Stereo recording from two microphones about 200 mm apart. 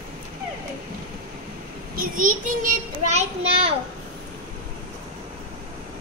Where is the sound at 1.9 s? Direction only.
45° right (ahead or behind).